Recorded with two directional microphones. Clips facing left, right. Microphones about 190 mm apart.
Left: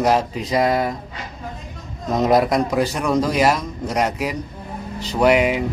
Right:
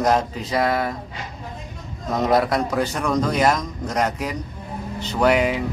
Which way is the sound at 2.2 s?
20° left (ahead or behind).